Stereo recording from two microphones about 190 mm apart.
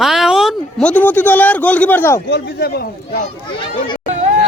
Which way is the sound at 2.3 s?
60° left (ahead or behind).